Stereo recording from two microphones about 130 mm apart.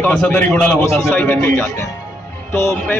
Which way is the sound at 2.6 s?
20° left (ahead or behind).